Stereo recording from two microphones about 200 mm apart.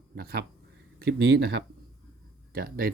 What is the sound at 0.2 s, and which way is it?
Speech, 50° right (ahead or behind).